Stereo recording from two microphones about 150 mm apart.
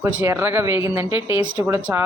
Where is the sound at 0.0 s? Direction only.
20° right (ahead or behind).